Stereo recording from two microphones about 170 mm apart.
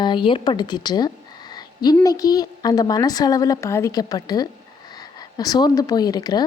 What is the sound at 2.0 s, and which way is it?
Speech, 20° left (ahead or behind).